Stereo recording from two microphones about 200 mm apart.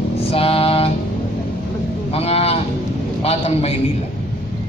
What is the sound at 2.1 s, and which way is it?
A man's voice, 30° left (ahead or behind).